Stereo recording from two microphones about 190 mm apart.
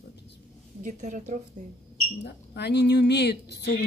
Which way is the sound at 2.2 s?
60° left (ahead or behind).